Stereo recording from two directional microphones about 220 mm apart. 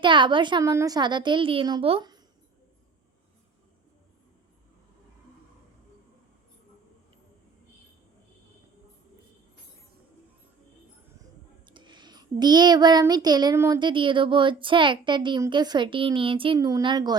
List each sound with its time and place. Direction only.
0.0 s a child's voice: 20° right (ahead or behind)
11.6 s a child's voice: 20° right (ahead or behind)